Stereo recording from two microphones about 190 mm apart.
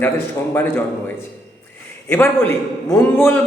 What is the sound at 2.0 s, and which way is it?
A man's voice, 10° left (ahead or behind).